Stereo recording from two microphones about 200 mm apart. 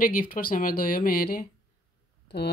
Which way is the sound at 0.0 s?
45° left (ahead or behind).